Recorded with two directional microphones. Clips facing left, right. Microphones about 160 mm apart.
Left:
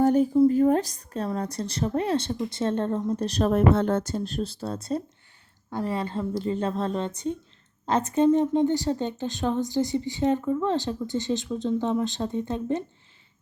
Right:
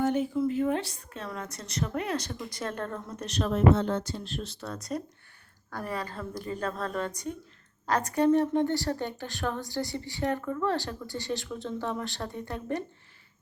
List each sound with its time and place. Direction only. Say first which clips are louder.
0.0 s a woman's voice: left 8 dB; 40° left (ahead or behind)
3.5 s a woman's voice: left 1 dB; 55° left (ahead or behind); by 12.8 s 20° left (ahead or behind)